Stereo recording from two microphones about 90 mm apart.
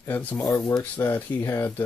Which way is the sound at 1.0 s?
35° left (ahead or behind).